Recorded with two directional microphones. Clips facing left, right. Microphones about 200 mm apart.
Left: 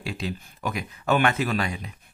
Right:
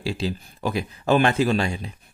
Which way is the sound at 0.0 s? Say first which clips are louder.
Right 5 dB; 30° right (ahead or behind).